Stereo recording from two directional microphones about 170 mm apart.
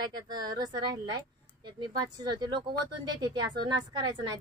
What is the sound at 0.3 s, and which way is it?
Speech, 25° right (ahead or behind).